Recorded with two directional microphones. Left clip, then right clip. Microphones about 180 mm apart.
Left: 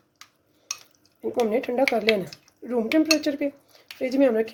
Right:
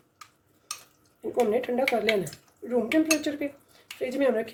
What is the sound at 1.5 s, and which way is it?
Speech, 45° left (ahead or behind).